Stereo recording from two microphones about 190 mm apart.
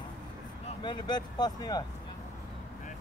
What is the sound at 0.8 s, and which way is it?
Speech, 20° left (ahead or behind).